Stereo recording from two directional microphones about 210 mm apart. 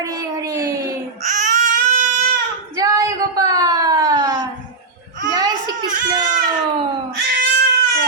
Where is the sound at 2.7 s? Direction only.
15° right (ahead or behind).